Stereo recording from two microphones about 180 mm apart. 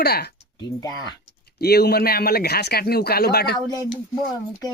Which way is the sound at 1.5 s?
60° left (ahead or behind).